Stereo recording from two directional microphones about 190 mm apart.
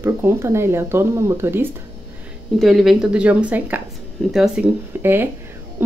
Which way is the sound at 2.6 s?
Centre (ahead or behind).